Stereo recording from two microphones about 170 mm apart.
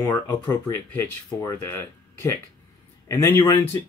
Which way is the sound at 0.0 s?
15° left (ahead or behind).